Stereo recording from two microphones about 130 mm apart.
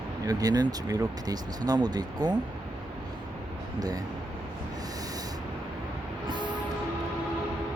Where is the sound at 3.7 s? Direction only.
30° right (ahead or behind).